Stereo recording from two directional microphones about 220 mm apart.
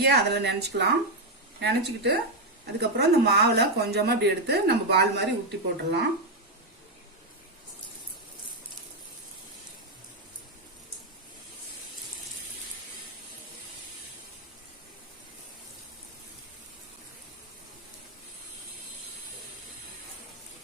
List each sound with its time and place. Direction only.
0.0 s speech: 50° right (ahead or behind)